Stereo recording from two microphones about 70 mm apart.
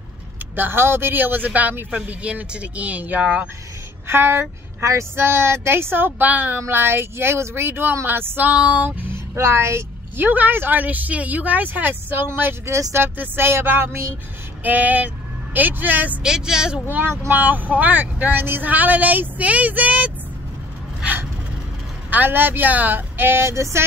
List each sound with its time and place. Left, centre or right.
0.6 s a woman's voice: right; by 3.4 s centre
4.1 s speech: right
9.3 s a woman's voice: right
14.6 s a woman's voice: right
16.2 s a woman's voice: centre
16.9 s a woman's voice: right
22.1 s a woman's voice: right